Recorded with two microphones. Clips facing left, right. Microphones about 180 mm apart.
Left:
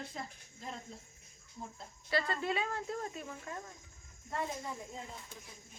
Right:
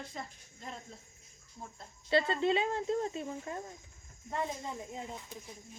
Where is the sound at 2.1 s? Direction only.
25° right (ahead or behind).